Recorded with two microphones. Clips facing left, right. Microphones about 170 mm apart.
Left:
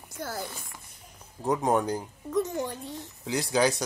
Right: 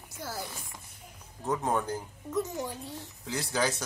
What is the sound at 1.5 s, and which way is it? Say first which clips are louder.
Speech: left 5 dB; 15° left (ahead or behind).